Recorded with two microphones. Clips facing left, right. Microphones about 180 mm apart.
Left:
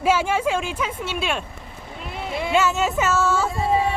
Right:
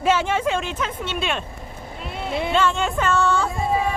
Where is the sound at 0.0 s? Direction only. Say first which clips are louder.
Even; 5° left (ahead or behind).